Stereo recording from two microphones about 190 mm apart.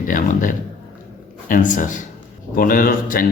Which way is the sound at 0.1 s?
45° left (ahead or behind).